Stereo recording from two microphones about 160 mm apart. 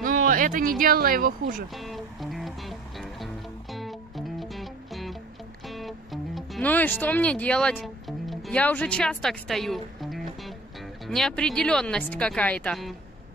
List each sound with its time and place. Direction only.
0.0 s speech: 60° right (ahead or behind)
1.8 s music: centre (ahead or behind)
4.4 s music: centre (ahead or behind)
6.7 s speech: 10° left (ahead or behind)